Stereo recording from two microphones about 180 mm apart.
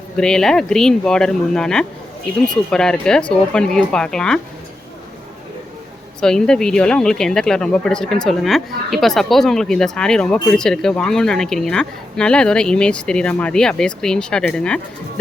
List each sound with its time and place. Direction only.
0.2 s speech: 5° left (ahead or behind)
6.1 s speech: 5° left (ahead or behind)